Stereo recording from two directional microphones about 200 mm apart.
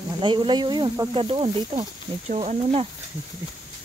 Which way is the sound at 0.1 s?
25° right (ahead or behind).